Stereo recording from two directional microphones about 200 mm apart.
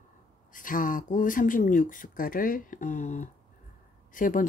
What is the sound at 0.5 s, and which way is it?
Speech, 40° left (ahead or behind).